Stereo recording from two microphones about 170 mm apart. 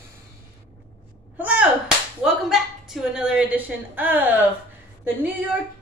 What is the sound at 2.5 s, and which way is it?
A woman's voice, centre (ahead or behind).